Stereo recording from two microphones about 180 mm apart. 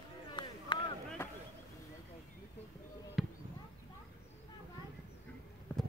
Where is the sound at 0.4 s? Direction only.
25° left (ahead or behind).